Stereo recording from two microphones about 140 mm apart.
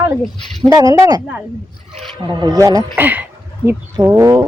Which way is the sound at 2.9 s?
10° right (ahead or behind).